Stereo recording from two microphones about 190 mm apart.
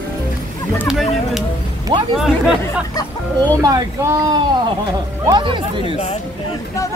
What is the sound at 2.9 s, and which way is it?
Music, 20° left (ahead or behind).